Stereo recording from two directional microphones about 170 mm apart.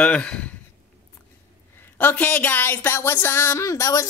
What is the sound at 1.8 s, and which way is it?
Speech, 10° left (ahead or behind).